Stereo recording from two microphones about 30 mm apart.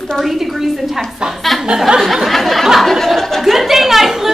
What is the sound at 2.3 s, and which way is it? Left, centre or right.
Speech, centre.